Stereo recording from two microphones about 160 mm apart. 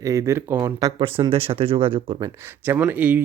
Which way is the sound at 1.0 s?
35° right (ahead or behind).